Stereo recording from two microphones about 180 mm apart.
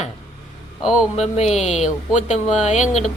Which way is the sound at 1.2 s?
35° left (ahead or behind).